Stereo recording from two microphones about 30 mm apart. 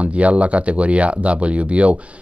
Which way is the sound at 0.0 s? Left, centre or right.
Right.